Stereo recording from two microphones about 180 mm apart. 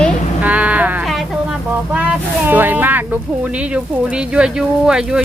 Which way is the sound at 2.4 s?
10° right (ahead or behind).